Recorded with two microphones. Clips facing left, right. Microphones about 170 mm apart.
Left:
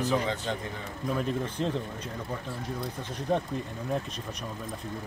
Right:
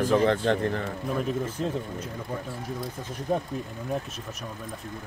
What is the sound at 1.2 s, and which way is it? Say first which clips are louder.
Speech: right 2 dB; 5° right (ahead or behind).